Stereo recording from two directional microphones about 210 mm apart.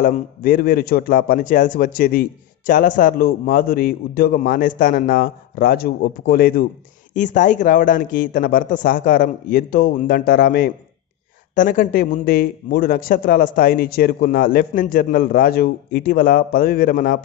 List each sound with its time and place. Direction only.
0.0 s a man's voice: 40° left (ahead or behind)